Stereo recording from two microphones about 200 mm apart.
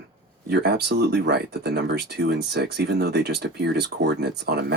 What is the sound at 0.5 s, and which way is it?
Speech, 55° right (ahead or behind).